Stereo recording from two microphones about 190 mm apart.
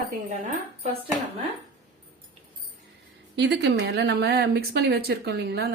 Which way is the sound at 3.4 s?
65° right (ahead or behind).